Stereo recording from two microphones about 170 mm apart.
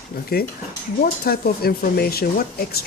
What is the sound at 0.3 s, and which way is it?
Speech, 65° left (ahead or behind).